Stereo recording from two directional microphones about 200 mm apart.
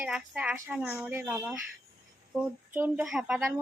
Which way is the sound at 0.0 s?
5° right (ahead or behind).